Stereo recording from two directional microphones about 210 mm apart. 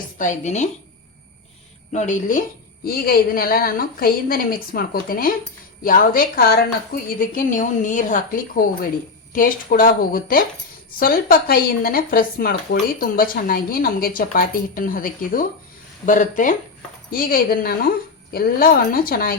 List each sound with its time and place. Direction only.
0.2 s a woman's voice: 35° left (ahead or behind)
1.9 s a woman's voice: 35° left (ahead or behind)